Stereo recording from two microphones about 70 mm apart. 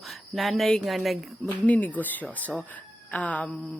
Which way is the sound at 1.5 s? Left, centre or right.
Left.